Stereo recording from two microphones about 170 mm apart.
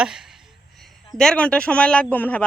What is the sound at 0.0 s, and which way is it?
Speech, 5° right (ahead or behind).